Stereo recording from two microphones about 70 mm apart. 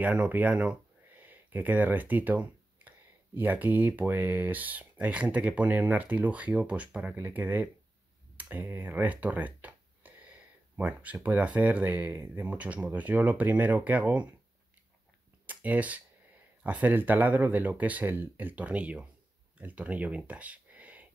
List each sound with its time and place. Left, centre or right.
0.0 s speech: right
8.4 s a sound: right
11.2 s speech: right
15.4 s speech: right